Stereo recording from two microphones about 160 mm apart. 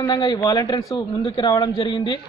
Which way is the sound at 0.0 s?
25° left (ahead or behind).